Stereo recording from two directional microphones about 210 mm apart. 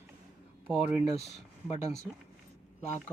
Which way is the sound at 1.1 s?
30° left (ahead or behind).